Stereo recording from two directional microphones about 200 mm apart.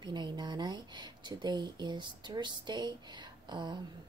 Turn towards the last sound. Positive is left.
turn(degrees=-20)  # may be behind; listen again after turning